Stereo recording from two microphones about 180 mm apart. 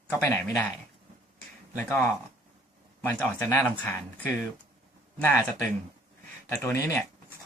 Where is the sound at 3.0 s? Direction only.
10° left (ahead or behind).